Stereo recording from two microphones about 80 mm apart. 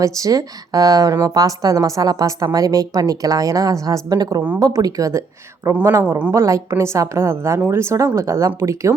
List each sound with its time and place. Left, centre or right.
0.0 s a woman's voice: right